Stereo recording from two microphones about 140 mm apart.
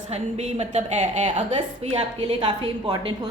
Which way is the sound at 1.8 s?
45° right (ahead or behind).